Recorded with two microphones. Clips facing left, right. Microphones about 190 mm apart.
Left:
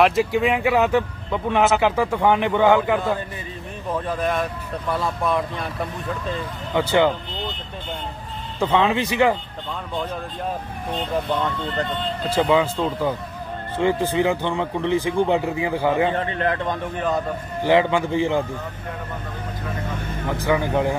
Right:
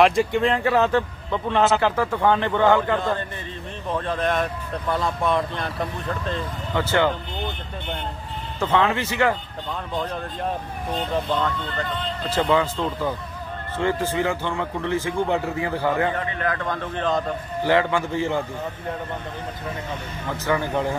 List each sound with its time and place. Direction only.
0.0 s speech: 5° left (ahead or behind)
6.7 s speech: 15° left (ahead or behind)
8.5 s speech: 15° left (ahead or behind)
11.7 s speech: 30° left (ahead or behind)
12.3 s speech: 10° left (ahead or behind)
16.2 s a man's voice: 30° left (ahead or behind)
20.2 s speech: 15° left (ahead or behind)